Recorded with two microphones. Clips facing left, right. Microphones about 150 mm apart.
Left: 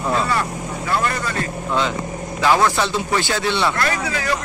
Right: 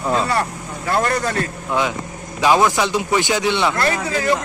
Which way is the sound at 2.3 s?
15° right (ahead or behind).